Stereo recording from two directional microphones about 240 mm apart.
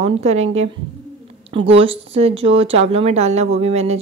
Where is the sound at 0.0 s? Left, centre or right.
Right.